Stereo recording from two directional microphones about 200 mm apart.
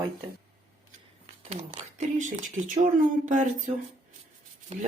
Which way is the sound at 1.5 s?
35° right (ahead or behind).